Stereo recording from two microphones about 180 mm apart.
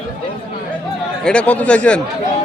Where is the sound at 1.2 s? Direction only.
5° left (ahead or behind).